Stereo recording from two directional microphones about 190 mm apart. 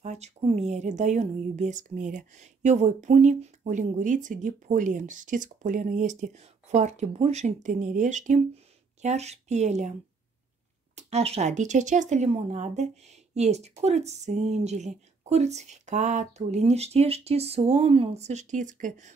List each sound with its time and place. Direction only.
0.0 s speech: 35° right (ahead or behind)
11.0 s speech: 35° right (ahead or behind)